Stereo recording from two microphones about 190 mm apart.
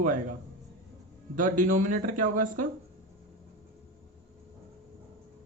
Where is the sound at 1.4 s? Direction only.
45° right (ahead or behind).